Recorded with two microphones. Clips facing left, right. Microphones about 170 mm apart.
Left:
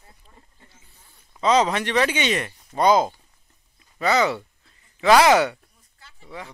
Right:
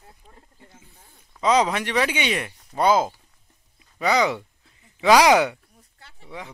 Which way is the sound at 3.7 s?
10° right (ahead or behind).